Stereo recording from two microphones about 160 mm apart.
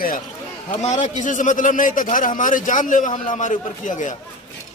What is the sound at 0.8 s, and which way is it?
A man's voice, 45° left (ahead or behind).